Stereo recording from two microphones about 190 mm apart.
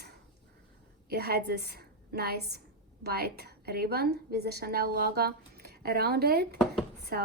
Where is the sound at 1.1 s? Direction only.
55° right (ahead or behind).